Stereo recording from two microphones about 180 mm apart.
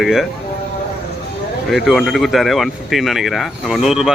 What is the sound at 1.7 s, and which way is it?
Speech, centre (ahead or behind).